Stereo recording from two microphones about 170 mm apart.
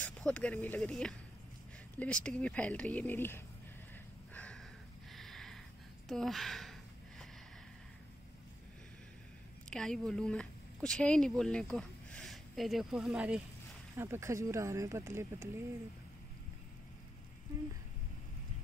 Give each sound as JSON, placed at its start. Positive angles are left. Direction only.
{"t": 0.0, "sound": "speech", "side_deg": 5}
{"t": 4.3, "sound": "a sound", "side_deg": 5}
{"t": 9.7, "sound": "speech", "side_deg": 5}